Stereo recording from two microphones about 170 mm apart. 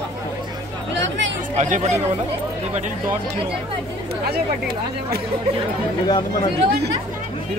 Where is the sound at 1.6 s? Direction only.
40° right (ahead or behind).